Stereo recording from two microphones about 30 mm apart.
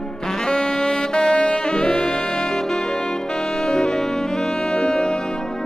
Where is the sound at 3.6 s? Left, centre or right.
Left.